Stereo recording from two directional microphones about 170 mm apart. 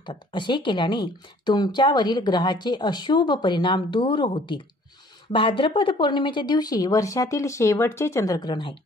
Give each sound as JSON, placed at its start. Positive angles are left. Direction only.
{"t": 0.0, "sound": "speech", "side_deg": 25}